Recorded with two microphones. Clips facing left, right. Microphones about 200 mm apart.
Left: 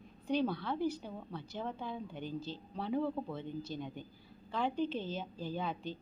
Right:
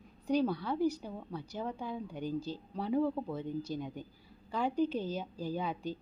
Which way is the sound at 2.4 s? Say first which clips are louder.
Right 4 dB; 40° right (ahead or behind).